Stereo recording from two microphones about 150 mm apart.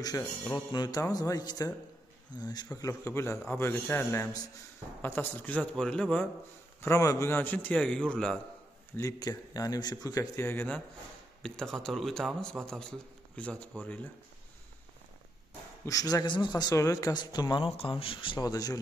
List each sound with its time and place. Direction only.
0.0 s a man's voice: 25° left (ahead or behind); by 6.2 s 5° left (ahead or behind)
6.8 s a man's voice: 20° left (ahead or behind)
8.9 s speech: 25° left (ahead or behind)
11.4 s a man's voice: 5° left (ahead or behind)
15.8 s speech: 25° left (ahead or behind)